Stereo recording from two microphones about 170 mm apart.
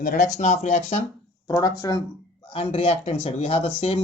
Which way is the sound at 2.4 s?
35° left (ahead or behind).